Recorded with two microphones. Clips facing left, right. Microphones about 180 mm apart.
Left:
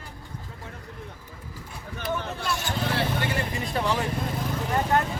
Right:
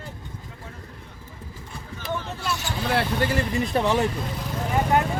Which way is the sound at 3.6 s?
25° right (ahead or behind).